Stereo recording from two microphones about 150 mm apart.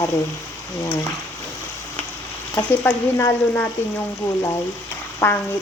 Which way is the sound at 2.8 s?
15° left (ahead or behind).